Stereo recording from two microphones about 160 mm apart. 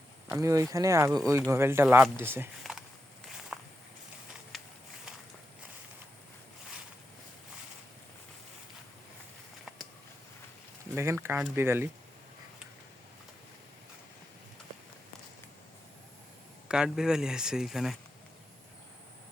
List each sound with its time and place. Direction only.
0.3 s speech: 20° right (ahead or behind)
3.5 s walk: 5° right (ahead or behind)
4.5 s a sound: centre (ahead or behind)
10.9 s speech: 15° right (ahead or behind)
16.6 s speech: 5° right (ahead or behind)